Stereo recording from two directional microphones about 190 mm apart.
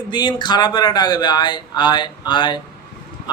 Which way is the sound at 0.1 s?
25° left (ahead or behind).